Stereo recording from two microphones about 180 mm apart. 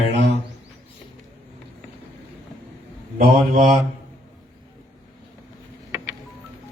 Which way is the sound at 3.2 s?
45° right (ahead or behind).